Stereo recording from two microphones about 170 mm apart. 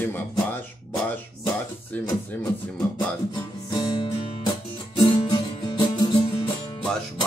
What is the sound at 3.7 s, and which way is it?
Music, 25° left (ahead or behind).